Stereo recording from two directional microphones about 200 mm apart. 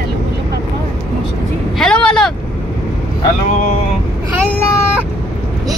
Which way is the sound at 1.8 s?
5° left (ahead or behind).